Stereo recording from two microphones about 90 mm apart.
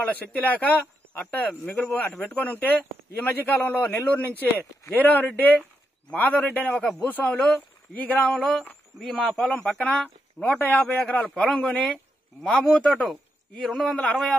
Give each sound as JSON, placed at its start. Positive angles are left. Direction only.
{"t": 0.0, "sound": "a man's voice", "side_deg": 15}
{"t": 1.8, "sound": "a man's voice", "side_deg": 10}
{"t": 6.8, "sound": "speech", "side_deg": 5}
{"t": 7.1, "sound": "a man's voice", "side_deg": 20}
{"t": 8.3, "sound": "speech", "side_deg": 5}
{"t": 10.4, "sound": "a man's voice", "side_deg": 15}